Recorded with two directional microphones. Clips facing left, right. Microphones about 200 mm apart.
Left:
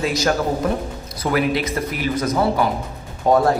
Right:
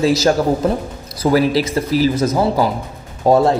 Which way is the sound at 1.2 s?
30° right (ahead or behind).